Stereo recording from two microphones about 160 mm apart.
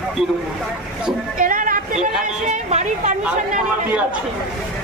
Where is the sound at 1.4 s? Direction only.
60° right (ahead or behind).